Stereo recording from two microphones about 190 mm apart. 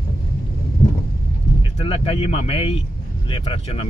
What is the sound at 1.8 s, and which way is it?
Speech, 30° left (ahead or behind).